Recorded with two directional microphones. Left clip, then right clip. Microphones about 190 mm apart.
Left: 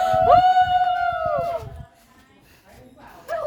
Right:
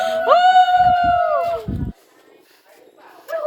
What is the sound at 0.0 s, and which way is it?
Music, 10° left (ahead or behind).